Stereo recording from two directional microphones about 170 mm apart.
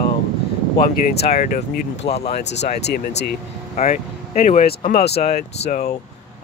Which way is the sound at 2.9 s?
75° left (ahead or behind).